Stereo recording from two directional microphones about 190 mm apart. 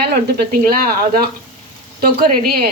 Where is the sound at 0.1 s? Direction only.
50° right (ahead or behind).